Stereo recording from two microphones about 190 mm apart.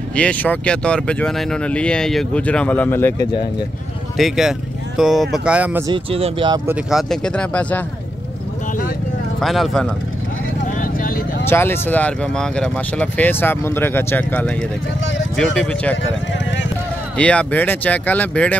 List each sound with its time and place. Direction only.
0.1 s speech: 5° left (ahead or behind)
4.2 s speech: centre (ahead or behind)
5.9 s speech: 30° right (ahead or behind)
6.6 s speech: 5° right (ahead or behind)
9.4 s speech: centre (ahead or behind)
10.8 s vehicle: 50° left (ahead or behind)
11.4 s speech: 10° left (ahead or behind)
16.0 s a sound: 70° left (ahead or behind)
17.2 s speech: 5° left (ahead or behind)